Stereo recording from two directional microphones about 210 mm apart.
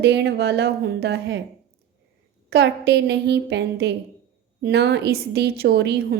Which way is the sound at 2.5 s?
50° right (ahead or behind).